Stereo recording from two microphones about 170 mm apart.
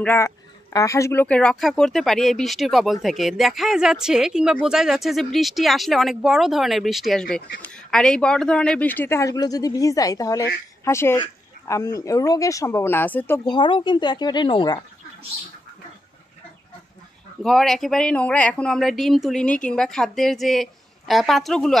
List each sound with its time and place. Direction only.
0.0 s speech: 10° left (ahead or behind)
13.5 s speech: 30° left (ahead or behind)
17.4 s speech: centre (ahead or behind)